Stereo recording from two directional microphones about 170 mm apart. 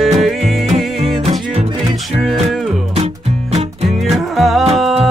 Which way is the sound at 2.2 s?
Centre (ahead or behind).